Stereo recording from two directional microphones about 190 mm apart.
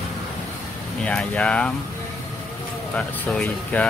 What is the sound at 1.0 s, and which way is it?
Speech, 5° left (ahead or behind).